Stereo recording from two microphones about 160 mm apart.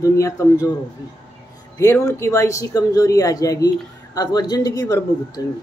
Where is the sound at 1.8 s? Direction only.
15° left (ahead or behind).